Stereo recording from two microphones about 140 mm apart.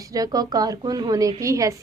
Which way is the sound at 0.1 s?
25° right (ahead or behind).